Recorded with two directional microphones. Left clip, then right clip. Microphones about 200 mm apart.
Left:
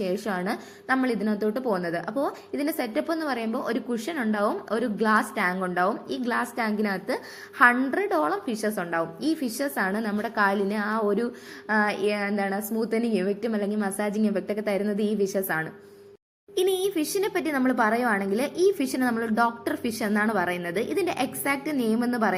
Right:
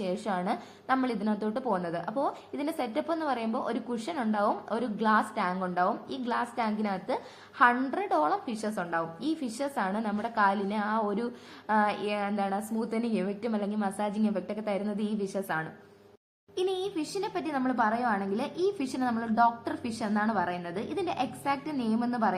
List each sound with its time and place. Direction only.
0.0 s a woman's voice: 15° left (ahead or behind)